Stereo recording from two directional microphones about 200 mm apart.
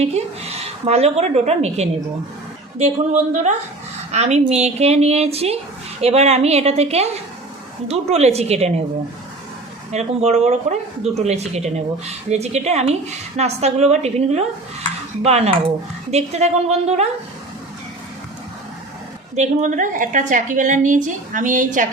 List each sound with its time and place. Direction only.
0.0 s a woman's voice: 30° right (ahead or behind)
9.9 s a woman's voice: 35° right (ahead or behind)
19.4 s a woman's voice: 40° right (ahead or behind)